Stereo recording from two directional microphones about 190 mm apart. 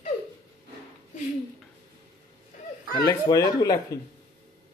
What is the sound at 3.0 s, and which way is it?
Speech, 20° left (ahead or behind).